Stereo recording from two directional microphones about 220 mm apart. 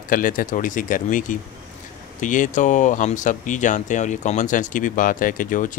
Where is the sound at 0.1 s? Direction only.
40° left (ahead or behind).